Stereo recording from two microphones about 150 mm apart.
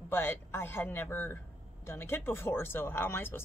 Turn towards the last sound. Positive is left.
turn(degrees=15)  # may be behind; listen again after turning